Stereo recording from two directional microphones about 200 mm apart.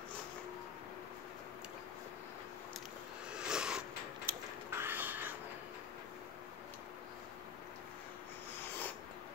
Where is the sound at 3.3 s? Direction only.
5° right (ahead or behind).